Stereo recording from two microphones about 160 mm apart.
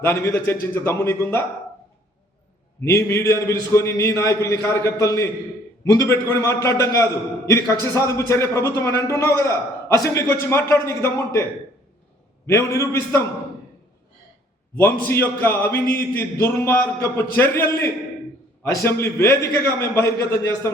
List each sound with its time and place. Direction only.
0.0 s a man's voice: 15° left (ahead or behind)
2.8 s a man's voice: 15° left (ahead or behind)
12.5 s a man's voice: 15° left (ahead or behind)
14.8 s a man's voice: 15° left (ahead or behind)